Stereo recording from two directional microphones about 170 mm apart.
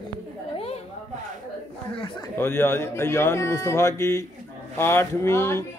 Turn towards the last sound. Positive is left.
turn(degrees=15)  # may be behind; listen again after turning